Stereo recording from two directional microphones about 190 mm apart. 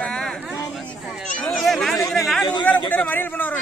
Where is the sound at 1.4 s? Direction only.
Centre (ahead or behind).